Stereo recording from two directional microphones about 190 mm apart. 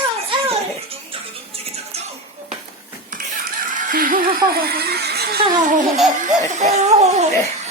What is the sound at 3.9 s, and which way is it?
Chuckle, 45° right (ahead or behind).